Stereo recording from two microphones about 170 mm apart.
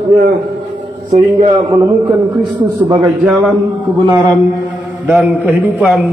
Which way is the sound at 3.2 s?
Centre (ahead or behind).